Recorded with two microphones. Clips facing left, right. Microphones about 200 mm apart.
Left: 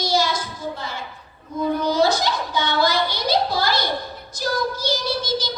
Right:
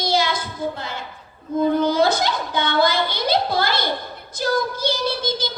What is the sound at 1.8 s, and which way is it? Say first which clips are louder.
A woman's voice: right 1 dB; 55° right (ahead or behind).